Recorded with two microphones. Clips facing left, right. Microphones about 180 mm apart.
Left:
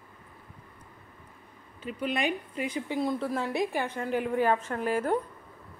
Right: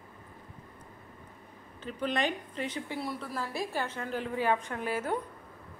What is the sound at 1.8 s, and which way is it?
A woman's voice, 10° left (ahead or behind).